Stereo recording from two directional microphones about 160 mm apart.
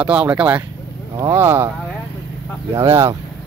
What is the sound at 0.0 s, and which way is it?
Speech, 10° right (ahead or behind).